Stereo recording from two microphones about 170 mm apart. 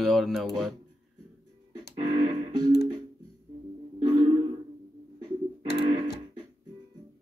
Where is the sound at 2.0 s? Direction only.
25° right (ahead or behind).